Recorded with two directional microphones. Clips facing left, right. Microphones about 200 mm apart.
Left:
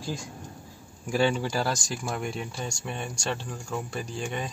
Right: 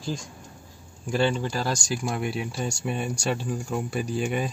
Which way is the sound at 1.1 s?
5° left (ahead or behind).